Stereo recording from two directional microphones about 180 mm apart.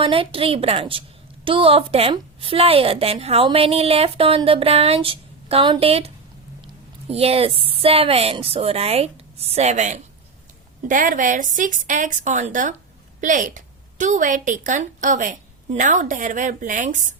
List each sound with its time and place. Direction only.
0.0 s a woman's voice: 30° right (ahead or behind)
7.1 s a woman's voice: 35° right (ahead or behind)